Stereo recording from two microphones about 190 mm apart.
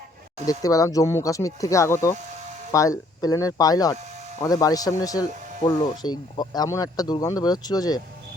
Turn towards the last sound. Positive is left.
turn(degrees=20)  # may be behind; listen again after turning